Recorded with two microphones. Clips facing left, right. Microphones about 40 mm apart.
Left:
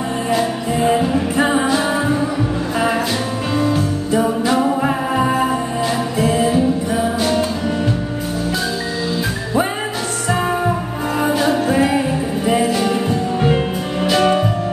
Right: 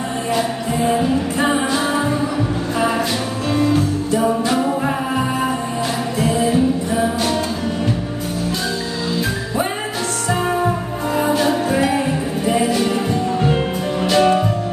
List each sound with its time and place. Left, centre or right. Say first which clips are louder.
1.5 s music: left 2 dB; centre
4.2 s music: left 1 dB; centre
4.6 s music: left 2 dB; centre
11.1 s music: left 1 dB; centre
12.4 s music: left 1 dB; centre
14.0 s music: even; centre